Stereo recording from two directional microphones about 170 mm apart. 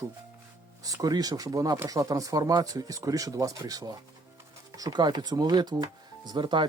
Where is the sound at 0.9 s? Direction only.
20° right (ahead or behind).